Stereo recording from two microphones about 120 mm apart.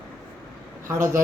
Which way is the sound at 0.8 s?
25° right (ahead or behind).